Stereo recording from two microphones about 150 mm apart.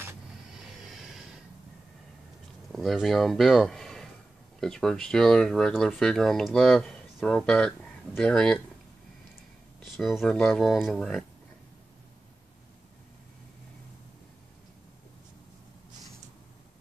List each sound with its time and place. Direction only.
0.5 s a sound: centre (ahead or behind)
2.7 s speech: centre (ahead or behind)
9.9 s speech: centre (ahead or behind)